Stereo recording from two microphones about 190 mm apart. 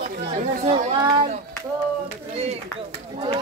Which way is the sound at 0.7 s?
35° right (ahead or behind).